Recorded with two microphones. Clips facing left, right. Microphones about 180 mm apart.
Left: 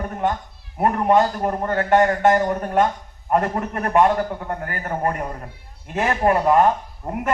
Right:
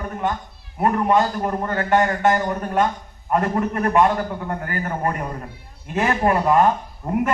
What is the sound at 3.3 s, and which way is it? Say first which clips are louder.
Speech: right 1 dB; 45° left (ahead or behind).